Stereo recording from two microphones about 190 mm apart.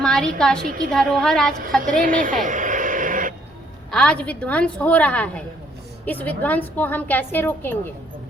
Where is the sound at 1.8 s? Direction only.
45° right (ahead or behind).